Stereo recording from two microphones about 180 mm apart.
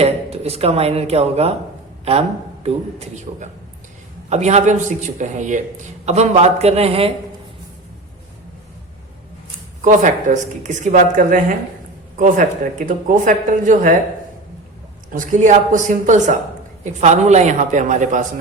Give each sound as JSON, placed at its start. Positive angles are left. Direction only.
{"t": 0.0, "sound": "speech", "side_deg": -35}
{"t": 2.6, "sound": "a man's voice", "side_deg": -40}
{"t": 9.8, "sound": "speech", "side_deg": -45}
{"t": 15.1, "sound": "speech", "side_deg": -45}